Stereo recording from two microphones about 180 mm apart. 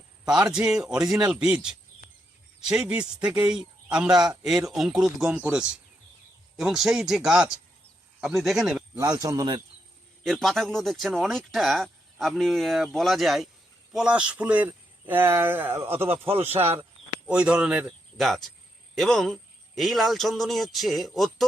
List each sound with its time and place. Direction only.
0.3 s speech: 5° right (ahead or behind)
9.0 s a man's voice: 20° right (ahead or behind)
10.2 s a man's voice: centre (ahead or behind)
16.0 s speech: 30° right (ahead or behind)
16.4 s a man's voice: 10° right (ahead or behind)